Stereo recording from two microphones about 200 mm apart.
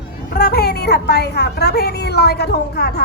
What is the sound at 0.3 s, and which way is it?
A woman's voice, 50° left (ahead or behind).